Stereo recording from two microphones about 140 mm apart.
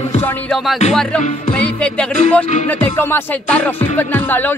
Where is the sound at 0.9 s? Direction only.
10° left (ahead or behind).